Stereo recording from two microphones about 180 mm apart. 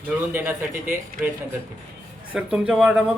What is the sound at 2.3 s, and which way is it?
Speech, 5° right (ahead or behind).